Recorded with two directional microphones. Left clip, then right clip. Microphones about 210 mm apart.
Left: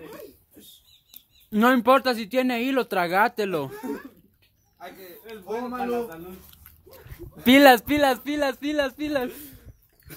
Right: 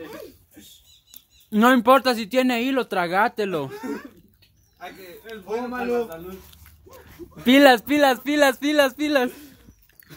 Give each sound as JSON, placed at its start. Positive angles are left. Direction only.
{"t": 1.1, "sound": "speech", "side_deg": 0}
{"t": 5.2, "sound": "speech", "side_deg": 0}
{"t": 9.3, "sound": "a sound", "side_deg": 45}